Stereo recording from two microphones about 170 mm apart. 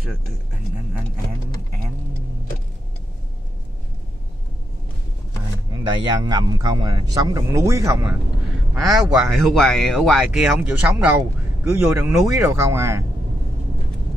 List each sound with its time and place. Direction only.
5.7 s speech: 25° right (ahead or behind)
8.7 s a man's voice: centre (ahead or behind); by 13.0 s 15° right (ahead or behind)